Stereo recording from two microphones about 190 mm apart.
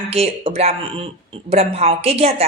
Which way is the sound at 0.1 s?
30° right (ahead or behind).